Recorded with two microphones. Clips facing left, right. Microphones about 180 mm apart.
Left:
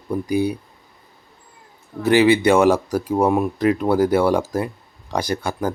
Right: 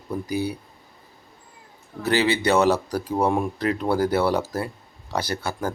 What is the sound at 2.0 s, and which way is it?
Speech, 10° left (ahead or behind).